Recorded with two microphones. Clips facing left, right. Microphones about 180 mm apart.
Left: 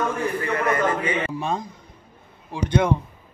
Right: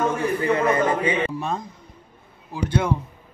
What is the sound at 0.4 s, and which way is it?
Speech, 25° right (ahead or behind).